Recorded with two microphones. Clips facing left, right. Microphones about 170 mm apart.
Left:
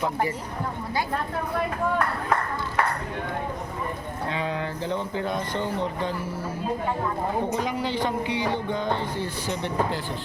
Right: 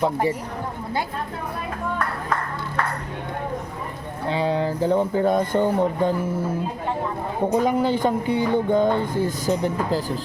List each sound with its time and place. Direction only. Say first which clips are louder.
0.0 s speech: right 5 dB; 30° right (ahead or behind)
4.3 s speech: right 8 dB; 30° right (ahead or behind)
7.6 s speech: right 7 dB; 45° right (ahead or behind)